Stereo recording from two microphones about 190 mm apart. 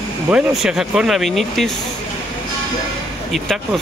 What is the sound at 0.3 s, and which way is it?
Speech, 5° right (ahead or behind).